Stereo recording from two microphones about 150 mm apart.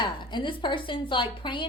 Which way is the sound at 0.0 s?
30° left (ahead or behind).